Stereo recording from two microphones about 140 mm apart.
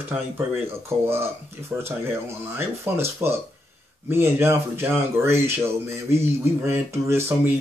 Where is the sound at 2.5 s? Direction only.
15° right (ahead or behind).